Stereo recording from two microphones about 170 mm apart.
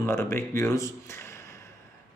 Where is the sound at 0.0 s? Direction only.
15° left (ahead or behind).